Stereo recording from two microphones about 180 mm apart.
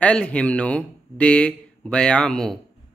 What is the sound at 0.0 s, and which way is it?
Speech, 5° left (ahead or behind).